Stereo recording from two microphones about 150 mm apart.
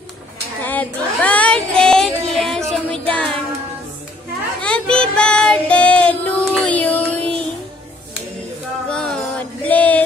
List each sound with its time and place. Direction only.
0.6 s child singing: 10° left (ahead or behind)
4.6 s child singing: 5° left (ahead or behind)
8.8 s music: 5° left (ahead or behind)